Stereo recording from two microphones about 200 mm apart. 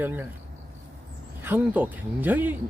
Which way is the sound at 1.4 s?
10° right (ahead or behind).